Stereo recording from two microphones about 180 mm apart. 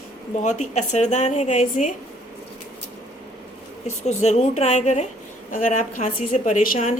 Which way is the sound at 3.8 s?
40° left (ahead or behind).